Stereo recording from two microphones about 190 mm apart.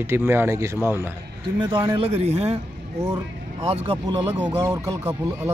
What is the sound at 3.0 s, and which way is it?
Speech, 15° right (ahead or behind).